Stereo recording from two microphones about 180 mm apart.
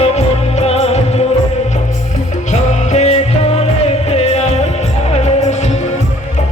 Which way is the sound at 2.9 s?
35° left (ahead or behind).